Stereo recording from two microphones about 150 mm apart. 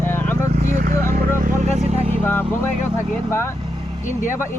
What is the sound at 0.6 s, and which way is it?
Vehicle, 60° right (ahead or behind).